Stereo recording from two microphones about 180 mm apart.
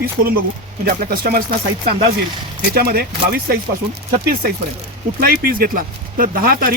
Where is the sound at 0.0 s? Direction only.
55° right (ahead or behind).